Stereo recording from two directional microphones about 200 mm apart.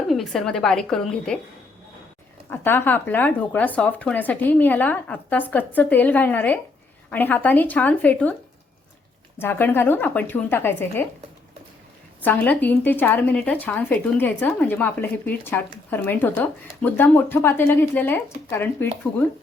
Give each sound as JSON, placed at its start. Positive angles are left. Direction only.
{"t": 0.1, "sound": "a woman's voice", "side_deg": 0}
{"t": 2.5, "sound": "speech", "side_deg": 10}
{"t": 9.4, "sound": "speech", "side_deg": 10}
{"t": 12.2, "sound": "speech", "side_deg": 10}